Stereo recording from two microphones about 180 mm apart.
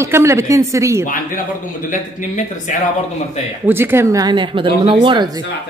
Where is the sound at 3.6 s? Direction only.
10° right (ahead or behind).